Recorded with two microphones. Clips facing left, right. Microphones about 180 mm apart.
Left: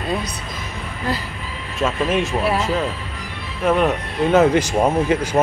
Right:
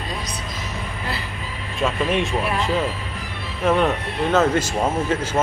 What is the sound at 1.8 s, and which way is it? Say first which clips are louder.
Speech: left 2 dB; centre (ahead or behind).